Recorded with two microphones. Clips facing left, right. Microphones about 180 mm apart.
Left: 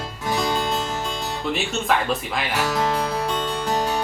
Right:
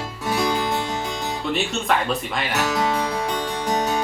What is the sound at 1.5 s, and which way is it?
Speech, centre (ahead or behind).